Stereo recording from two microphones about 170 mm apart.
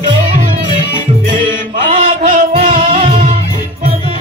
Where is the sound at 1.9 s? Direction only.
45° right (ahead or behind).